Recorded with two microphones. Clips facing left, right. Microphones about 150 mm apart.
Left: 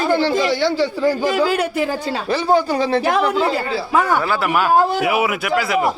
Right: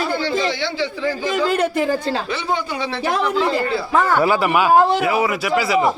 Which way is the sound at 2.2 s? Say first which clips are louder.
Left 7 dB; 35° left (ahead or behind).